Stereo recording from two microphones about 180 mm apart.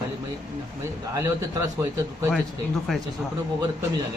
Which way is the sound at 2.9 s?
Centre (ahead or behind).